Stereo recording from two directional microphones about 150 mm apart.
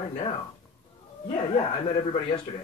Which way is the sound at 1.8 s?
40° left (ahead or behind).